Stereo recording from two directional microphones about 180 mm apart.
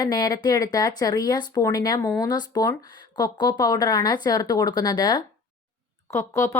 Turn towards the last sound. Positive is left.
turn(degrees=15)  # may be behind; listen again after turning